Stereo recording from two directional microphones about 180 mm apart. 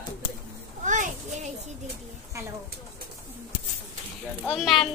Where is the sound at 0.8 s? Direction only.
45° right (ahead or behind).